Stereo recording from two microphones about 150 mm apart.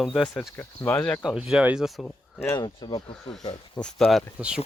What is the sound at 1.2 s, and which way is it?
Speech, centre (ahead or behind).